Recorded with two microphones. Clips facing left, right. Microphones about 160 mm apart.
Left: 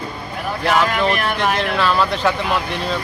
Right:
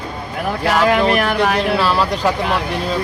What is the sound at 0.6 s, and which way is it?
Speech, 35° right (ahead or behind).